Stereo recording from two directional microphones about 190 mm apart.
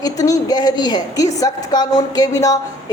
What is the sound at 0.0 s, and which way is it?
A woman's voice, 20° left (ahead or behind).